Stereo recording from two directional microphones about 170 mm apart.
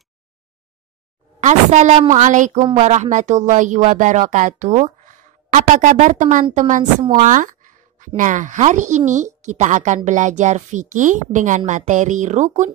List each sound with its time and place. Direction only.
1.4 s speech: 45° right (ahead or behind)
7.2 s a sound: 50° right (ahead or behind)
8.2 s speech: 50° right (ahead or behind)